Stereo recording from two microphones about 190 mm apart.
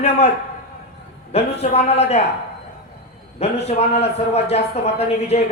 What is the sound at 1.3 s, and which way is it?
Speech, 35° left (ahead or behind).